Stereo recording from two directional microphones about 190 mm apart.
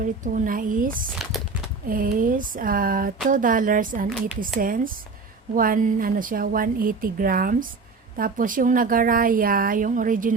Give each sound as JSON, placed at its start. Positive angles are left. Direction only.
{"t": 0.0, "sound": "speech", "side_deg": -45}